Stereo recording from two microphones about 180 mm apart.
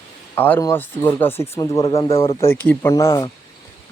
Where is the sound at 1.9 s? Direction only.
30° left (ahead or behind).